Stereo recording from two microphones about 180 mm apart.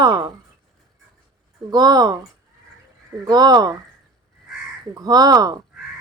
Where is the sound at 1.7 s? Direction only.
20° right (ahead or behind).